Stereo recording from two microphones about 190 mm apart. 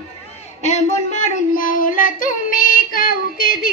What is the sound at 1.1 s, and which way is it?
Child singing, 45° left (ahead or behind).